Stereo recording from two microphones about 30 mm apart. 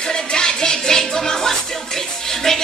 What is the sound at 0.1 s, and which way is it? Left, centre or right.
Music, left.